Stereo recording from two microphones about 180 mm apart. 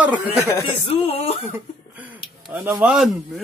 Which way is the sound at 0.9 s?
35° left (ahead or behind).